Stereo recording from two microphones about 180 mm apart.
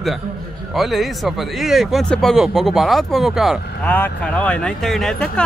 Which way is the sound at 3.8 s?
10° left (ahead or behind).